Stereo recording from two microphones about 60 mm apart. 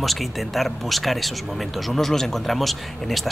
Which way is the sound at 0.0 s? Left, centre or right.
Centre.